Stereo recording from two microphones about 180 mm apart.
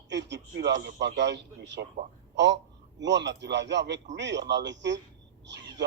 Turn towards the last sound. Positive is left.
turn(degrees=-75)  # may be behind; listen again after turning